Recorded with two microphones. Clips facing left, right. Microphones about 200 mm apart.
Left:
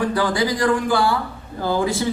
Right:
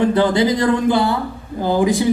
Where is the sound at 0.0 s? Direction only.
25° right (ahead or behind).